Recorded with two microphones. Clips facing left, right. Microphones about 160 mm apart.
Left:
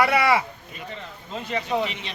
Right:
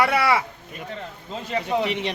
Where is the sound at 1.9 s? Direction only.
65° right (ahead or behind).